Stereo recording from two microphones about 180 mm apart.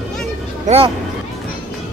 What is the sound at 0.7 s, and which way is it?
Speech, 35° right (ahead or behind).